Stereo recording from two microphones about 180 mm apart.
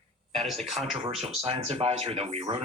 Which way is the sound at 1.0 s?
30° right (ahead or behind).